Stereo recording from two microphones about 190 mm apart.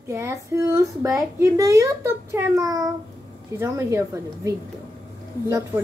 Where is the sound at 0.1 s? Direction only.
15° right (ahead or behind).